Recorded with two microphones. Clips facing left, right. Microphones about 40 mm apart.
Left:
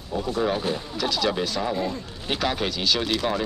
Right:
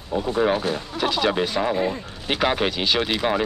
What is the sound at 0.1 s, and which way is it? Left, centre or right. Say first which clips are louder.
Speech: right 4 dB; right.